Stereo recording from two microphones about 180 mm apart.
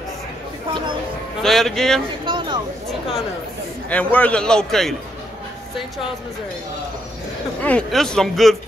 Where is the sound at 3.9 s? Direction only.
10° left (ahead or behind).